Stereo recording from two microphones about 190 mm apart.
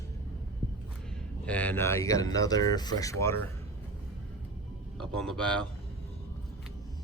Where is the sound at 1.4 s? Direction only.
5° left (ahead or behind).